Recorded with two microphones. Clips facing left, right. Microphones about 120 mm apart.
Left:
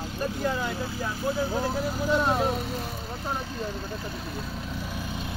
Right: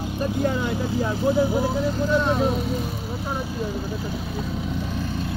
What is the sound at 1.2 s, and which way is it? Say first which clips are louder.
Speech: right 6 dB; 15° right (ahead or behind).